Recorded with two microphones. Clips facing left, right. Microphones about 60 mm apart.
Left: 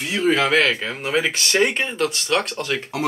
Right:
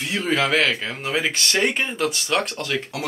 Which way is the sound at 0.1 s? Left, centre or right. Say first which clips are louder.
Left 3 dB; centre.